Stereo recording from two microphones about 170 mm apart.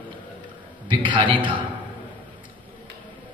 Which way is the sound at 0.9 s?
30° right (ahead or behind).